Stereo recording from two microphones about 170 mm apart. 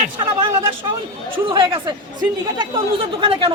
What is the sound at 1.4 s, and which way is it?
A man's voice, 30° right (ahead or behind).